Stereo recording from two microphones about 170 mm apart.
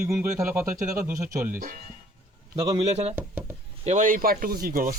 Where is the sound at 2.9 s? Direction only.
40° right (ahead or behind).